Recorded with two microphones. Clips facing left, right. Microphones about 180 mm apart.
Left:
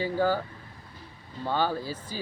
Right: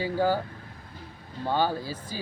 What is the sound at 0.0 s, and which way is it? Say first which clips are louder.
Speech: even; 15° right (ahead or behind).